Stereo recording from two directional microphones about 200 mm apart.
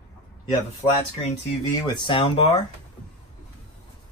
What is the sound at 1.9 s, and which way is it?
Speech, 25° left (ahead or behind).